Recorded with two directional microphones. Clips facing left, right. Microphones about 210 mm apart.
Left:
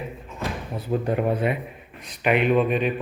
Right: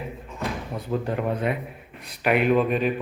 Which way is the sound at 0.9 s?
20° left (ahead or behind).